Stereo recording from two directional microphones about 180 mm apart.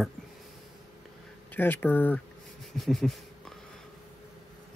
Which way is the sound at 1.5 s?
10° left (ahead or behind).